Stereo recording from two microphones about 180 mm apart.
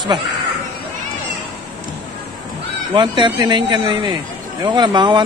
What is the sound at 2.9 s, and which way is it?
Speech, 25° right (ahead or behind).